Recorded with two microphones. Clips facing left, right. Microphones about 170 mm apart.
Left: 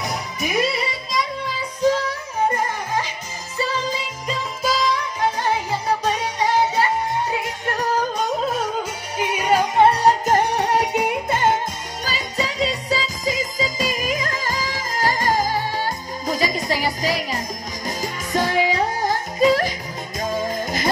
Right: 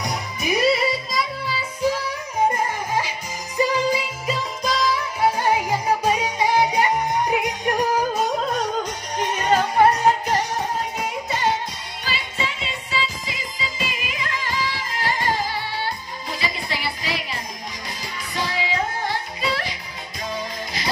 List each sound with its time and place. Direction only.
0.0 s music: centre (ahead or behind)
3.5 s music: 15° right (ahead or behind)
4.6 s music: centre (ahead or behind)
9.2 s music: 10° left (ahead or behind)
9.8 s music: 30° left (ahead or behind)